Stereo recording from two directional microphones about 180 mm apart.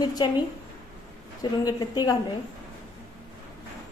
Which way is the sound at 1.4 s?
20° left (ahead or behind).